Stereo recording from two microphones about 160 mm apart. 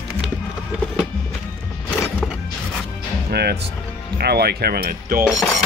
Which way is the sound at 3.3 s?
90° right.